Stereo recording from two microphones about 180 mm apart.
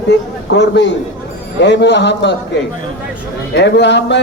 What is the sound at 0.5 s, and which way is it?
A man's voice, 70° left (ahead or behind).